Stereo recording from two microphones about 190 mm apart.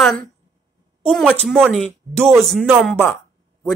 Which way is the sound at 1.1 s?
5° left (ahead or behind).